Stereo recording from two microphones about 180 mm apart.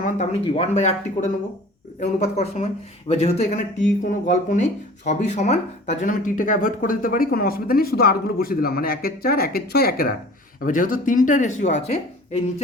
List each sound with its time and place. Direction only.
0.4 s speech: 30° left (ahead or behind)